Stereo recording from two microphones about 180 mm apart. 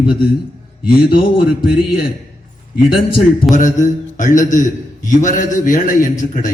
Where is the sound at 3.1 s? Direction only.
45° left (ahead or behind).